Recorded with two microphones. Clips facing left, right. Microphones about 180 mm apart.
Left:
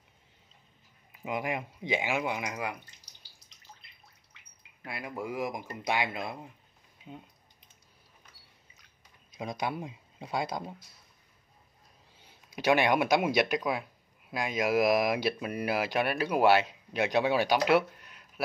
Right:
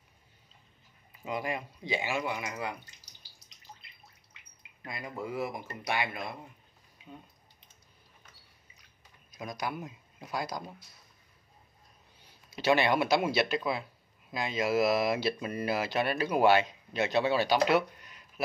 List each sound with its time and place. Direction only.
1.2 s speech: 15° left (ahead or behind)
4.8 s speech: 10° left (ahead or behind)
9.4 s speech: 25° left (ahead or behind)
12.4 s speech: 15° left (ahead or behind)